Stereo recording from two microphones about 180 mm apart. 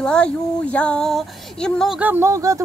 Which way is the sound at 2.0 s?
10° right (ahead or behind).